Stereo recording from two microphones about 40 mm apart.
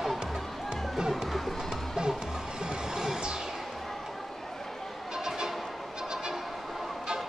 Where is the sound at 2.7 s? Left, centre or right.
Centre.